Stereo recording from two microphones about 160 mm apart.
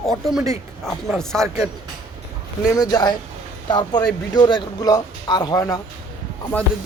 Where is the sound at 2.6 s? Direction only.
25° left (ahead or behind).